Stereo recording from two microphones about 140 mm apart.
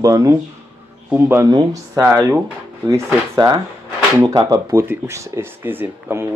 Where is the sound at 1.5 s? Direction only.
30° right (ahead or behind).